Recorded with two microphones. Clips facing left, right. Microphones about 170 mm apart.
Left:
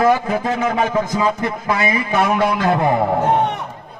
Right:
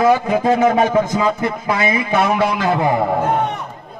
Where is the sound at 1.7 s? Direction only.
20° right (ahead or behind).